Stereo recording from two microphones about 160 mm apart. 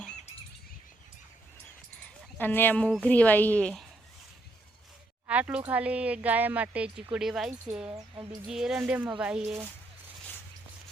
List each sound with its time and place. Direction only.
2.4 s a woman's voice: 10° left (ahead or behind)
5.3 s speech: 10° right (ahead or behind)
7.9 s a sound: 25° right (ahead or behind)
8.4 s speech: 5° right (ahead or behind)